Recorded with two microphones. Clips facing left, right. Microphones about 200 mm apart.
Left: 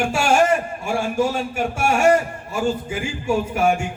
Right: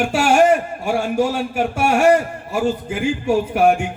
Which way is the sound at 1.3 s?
60° right (ahead or behind).